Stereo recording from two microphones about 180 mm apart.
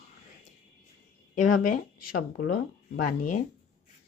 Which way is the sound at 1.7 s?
50° left (ahead or behind).